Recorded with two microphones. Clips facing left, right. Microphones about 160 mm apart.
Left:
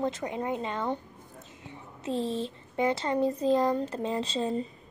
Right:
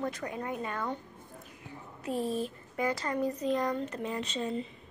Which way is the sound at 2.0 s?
25° left (ahead or behind).